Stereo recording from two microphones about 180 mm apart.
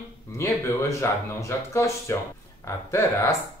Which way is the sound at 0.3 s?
15° left (ahead or behind).